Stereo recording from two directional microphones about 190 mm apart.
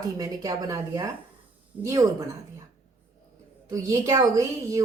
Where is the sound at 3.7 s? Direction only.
15° right (ahead or behind).